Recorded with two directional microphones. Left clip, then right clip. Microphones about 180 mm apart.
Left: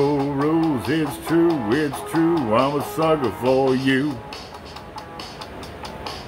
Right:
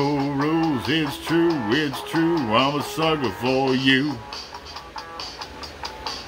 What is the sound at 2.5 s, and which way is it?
Speech, 20° right (ahead or behind).